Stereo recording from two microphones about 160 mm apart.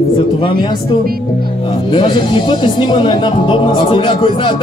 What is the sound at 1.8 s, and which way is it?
Speech, 35° left (ahead or behind).